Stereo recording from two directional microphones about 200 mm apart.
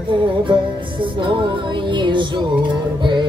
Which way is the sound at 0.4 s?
25° right (ahead or behind).